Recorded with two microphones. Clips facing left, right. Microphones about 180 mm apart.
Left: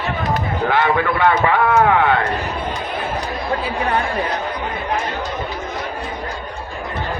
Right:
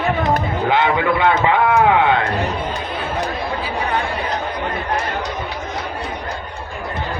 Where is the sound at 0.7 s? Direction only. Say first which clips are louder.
Right 1 dB; 20° right (ahead or behind).